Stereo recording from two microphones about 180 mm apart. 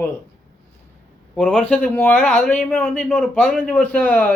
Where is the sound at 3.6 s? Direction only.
10° left (ahead or behind).